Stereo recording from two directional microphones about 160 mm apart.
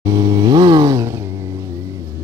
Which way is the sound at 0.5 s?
25° right (ahead or behind).